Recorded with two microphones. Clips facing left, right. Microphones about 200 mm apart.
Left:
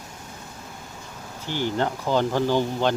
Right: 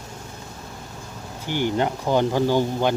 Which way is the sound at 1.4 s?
15° right (ahead or behind).